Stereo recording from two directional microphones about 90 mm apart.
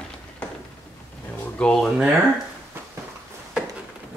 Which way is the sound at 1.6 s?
10° left (ahead or behind).